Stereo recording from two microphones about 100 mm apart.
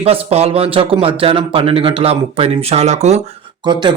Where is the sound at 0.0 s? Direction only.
80° right.